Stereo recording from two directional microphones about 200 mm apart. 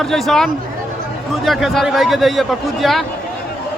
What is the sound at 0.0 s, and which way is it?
A man's voice, centre (ahead or behind).